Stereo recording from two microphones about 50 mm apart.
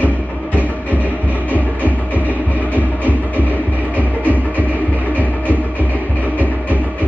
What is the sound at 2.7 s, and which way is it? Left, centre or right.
Music, right.